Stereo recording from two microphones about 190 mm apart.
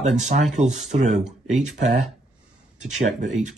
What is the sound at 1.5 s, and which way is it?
Speech, 40° right (ahead or behind).